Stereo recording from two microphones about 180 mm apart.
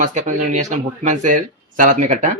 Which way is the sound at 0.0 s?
45° right (ahead or behind).